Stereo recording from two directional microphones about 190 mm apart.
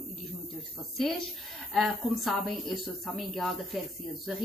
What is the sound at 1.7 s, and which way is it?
A woman's voice, centre (ahead or behind).